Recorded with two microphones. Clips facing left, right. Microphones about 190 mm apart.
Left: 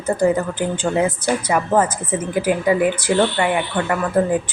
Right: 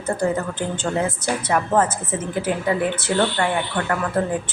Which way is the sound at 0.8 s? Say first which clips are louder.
Left 4 dB; 15° left (ahead or behind).